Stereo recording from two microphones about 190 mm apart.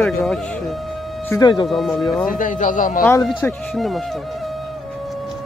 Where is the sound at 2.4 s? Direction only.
45° left (ahead or behind).